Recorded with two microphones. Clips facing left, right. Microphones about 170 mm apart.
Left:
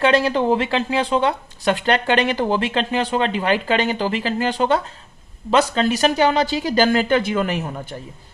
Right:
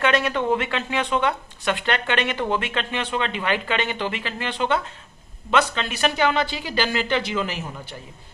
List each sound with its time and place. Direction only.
0.0 s speech: 30° left (ahead or behind); by 7.9 s 60° left (ahead or behind)